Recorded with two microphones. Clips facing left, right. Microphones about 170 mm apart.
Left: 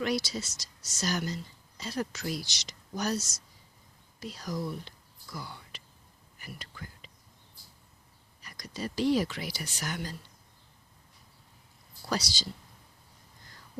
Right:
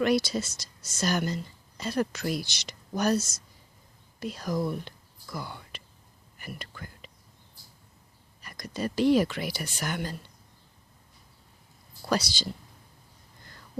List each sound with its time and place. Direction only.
0.0 s speech: 55° right (ahead or behind)
4.2 s whispering: 55° right (ahead or behind)
8.4 s speech: 55° right (ahead or behind)
12.0 s speech: 60° right (ahead or behind)